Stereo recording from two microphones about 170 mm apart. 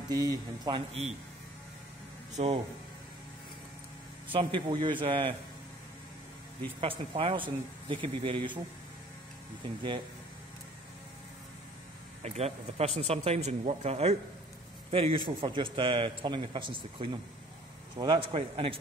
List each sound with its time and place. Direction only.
0.1 s a man's voice: 20° right (ahead or behind)
2.3 s speech: 35° right (ahead or behind)
4.3 s a man's voice: 30° right (ahead or behind)
6.8 s speech: 35° right (ahead or behind)
12.2 s a man's voice: 40° right (ahead or behind)